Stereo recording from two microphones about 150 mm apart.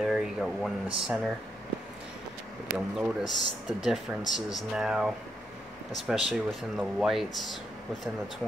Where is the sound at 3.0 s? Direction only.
Centre (ahead or behind).